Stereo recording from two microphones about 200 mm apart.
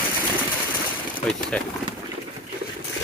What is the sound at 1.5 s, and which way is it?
Speech, 5° left (ahead or behind).